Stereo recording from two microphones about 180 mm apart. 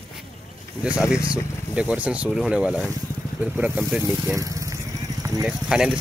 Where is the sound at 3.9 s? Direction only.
10° right (ahead or behind).